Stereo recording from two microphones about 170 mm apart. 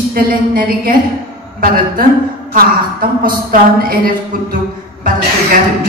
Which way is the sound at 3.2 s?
55° right (ahead or behind).